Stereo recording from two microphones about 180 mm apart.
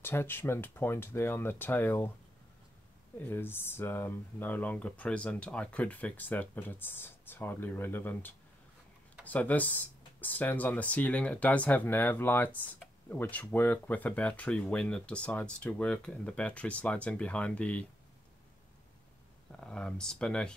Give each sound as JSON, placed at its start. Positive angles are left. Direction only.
{"t": 0.0, "sound": "speech", "side_deg": 15}
{"t": 3.2, "sound": "speech", "side_deg": 10}
{"t": 19.6, "sound": "speech", "side_deg": 5}